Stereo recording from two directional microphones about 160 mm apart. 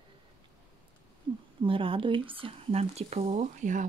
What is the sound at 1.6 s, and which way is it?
Speech, 35° right (ahead or behind).